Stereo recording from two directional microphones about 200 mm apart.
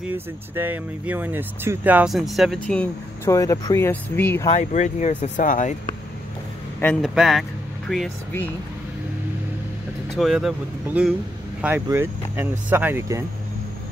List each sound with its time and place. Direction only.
0.6 s speech: 10° right (ahead or behind); by 4.5 s 10° left (ahead or behind)
4.5 s speech: 35° left (ahead or behind)
6.8 s speech: 5° left (ahead or behind)
10.0 s speech: centre (ahead or behind)